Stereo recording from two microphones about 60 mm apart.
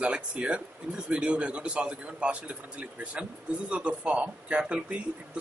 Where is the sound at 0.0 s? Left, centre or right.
Centre.